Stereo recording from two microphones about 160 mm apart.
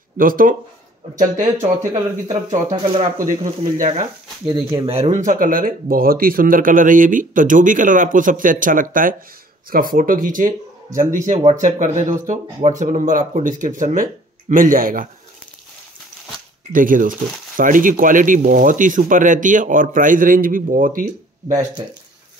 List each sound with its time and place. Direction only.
0.2 s speech: 60° right (ahead or behind)
1.4 s speech: 45° right (ahead or behind)
2.2 s speech: 30° right (ahead or behind)
3.2 s speech: 55° right (ahead or behind)
4.8 s speech: 40° right (ahead or behind); by 15.0 s 60° right (ahead or behind)
16.7 s speech: 60° right (ahead or behind)